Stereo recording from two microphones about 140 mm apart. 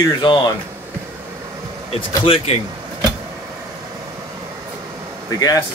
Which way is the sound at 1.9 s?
40° left (ahead or behind).